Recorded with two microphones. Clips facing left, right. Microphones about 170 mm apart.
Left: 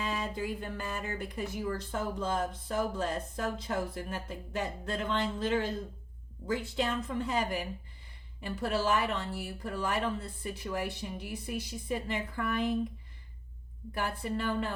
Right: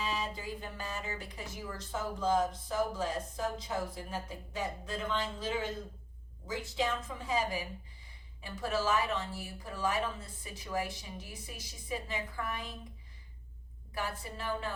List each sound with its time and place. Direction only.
0.0 s speech: 55° left (ahead or behind)
13.9 s speech: 60° left (ahead or behind)